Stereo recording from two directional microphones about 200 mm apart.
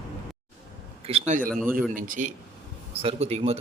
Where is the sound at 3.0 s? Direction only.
30° right (ahead or behind).